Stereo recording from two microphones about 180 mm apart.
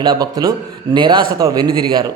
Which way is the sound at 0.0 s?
20° right (ahead or behind).